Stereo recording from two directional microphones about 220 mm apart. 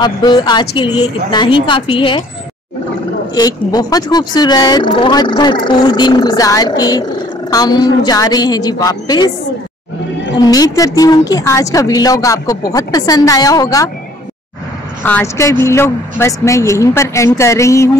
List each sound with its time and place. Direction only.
0.0 s speech: 20° left (ahead or behind)
3.3 s speech: 15° left (ahead or behind)
10.4 s speech: 15° left (ahead or behind)
15.0 s speech: 10° left (ahead or behind)